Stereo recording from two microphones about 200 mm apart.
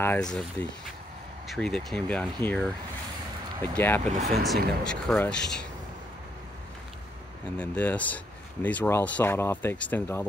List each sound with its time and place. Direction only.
0.0 s speech: 5° left (ahead or behind)
3.7 s speech: 10° left (ahead or behind)
4.0 s speech: 35° right (ahead or behind)
4.4 s speech: centre (ahead or behind)
7.5 s speech: 5° left (ahead or behind)